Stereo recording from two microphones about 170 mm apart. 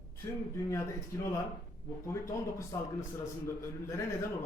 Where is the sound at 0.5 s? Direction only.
15° left (ahead or behind).